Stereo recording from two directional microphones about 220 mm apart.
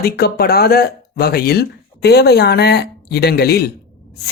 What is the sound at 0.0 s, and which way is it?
Speech, 45° left (ahead or behind).